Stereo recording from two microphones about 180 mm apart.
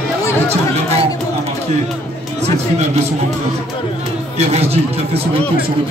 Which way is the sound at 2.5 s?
35° right (ahead or behind).